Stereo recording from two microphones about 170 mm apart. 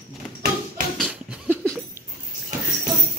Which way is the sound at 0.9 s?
5° right (ahead or behind).